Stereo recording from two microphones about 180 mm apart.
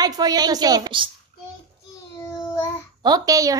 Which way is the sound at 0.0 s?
20° right (ahead or behind).